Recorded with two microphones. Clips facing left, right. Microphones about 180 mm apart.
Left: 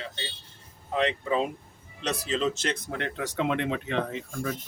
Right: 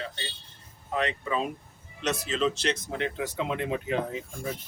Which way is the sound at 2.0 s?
35° left (ahead or behind).